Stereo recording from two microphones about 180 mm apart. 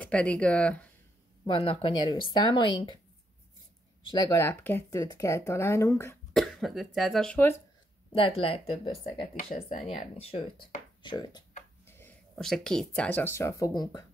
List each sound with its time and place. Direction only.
0.0 s speech: 5° left (ahead or behind)
1.4 s speech: 30° left (ahead or behind)
4.0 s speech: 25° left (ahead or behind)
6.3 s speech: centre (ahead or behind)
8.1 s speech: 30° left (ahead or behind)
9.7 s speech: 40° left (ahead or behind); by 11.4 s 25° left (ahead or behind)
11.8 s speech: 10° left (ahead or behind)